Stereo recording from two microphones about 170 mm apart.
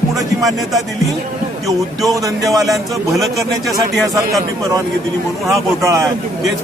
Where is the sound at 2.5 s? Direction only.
Centre (ahead or behind).